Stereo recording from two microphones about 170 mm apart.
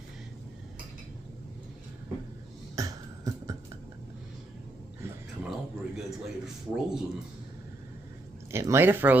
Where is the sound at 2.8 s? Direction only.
20° right (ahead or behind).